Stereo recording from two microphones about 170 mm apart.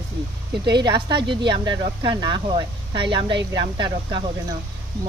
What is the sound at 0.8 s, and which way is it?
Speech, 25° right (ahead or behind).